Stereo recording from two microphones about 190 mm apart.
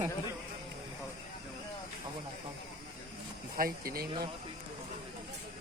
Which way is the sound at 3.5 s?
50° right (ahead or behind).